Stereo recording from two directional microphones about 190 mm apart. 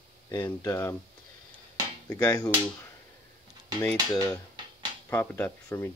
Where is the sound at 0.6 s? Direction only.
15° left (ahead or behind).